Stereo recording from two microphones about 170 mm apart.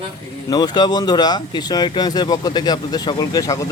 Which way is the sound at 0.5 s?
25° left (ahead or behind).